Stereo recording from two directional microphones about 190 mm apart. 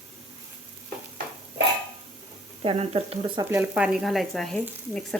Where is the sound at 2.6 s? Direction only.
30° right (ahead or behind).